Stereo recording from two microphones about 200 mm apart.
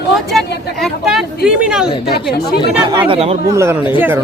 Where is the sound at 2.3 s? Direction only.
55° left (ahead or behind).